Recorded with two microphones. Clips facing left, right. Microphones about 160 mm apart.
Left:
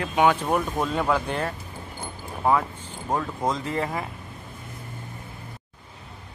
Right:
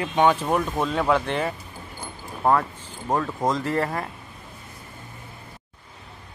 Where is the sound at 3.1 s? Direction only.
Centre (ahead or behind).